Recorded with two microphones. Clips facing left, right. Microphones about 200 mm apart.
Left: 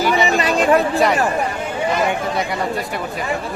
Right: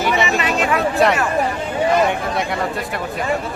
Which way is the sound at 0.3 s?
35° left (ahead or behind).